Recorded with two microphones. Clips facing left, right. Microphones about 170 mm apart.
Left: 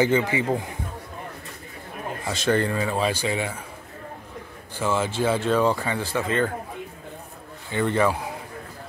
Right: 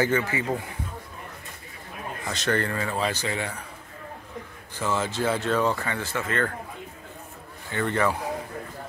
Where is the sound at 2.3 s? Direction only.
10° left (ahead or behind).